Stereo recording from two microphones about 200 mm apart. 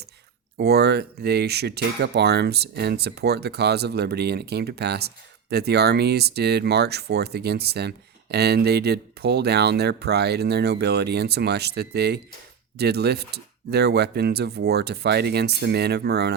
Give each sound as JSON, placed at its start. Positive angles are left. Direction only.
{"t": 0.5, "sound": "speech", "side_deg": -55}